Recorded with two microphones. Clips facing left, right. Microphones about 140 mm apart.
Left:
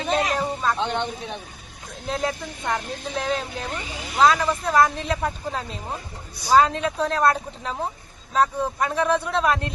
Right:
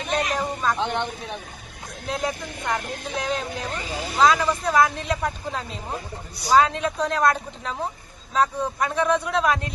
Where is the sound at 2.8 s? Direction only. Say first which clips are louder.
Left 1 dB; 45° right (ahead or behind).